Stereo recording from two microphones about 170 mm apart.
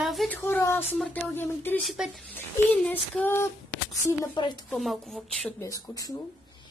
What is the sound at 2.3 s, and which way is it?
Speech, 10° left (ahead or behind).